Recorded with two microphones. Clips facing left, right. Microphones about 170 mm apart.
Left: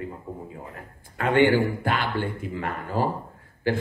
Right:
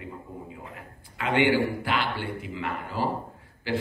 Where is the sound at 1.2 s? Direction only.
50° left (ahead or behind).